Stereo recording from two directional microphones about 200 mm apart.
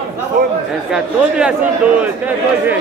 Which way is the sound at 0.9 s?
5° right (ahead or behind).